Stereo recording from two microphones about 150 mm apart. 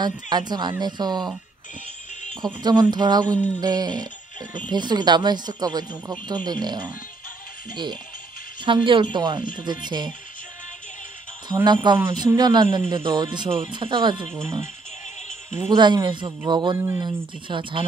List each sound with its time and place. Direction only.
0.0 s speech: 30° right (ahead or behind)
2.4 s speech: 30° right (ahead or behind)
11.6 s speech: 30° right (ahead or behind)
15.7 s speech: 30° right (ahead or behind)
16.7 s speech: 15° right (ahead or behind)
17.0 s speech: 35° right (ahead or behind)